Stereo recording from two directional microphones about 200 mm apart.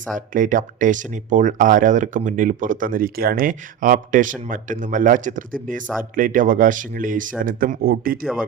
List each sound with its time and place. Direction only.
0.3 s speech: 40° right (ahead or behind)